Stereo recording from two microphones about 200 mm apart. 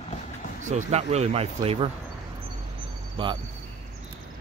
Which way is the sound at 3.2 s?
25° right (ahead or behind).